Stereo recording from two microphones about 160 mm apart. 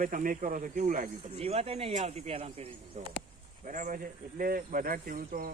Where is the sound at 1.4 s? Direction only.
40° right (ahead or behind).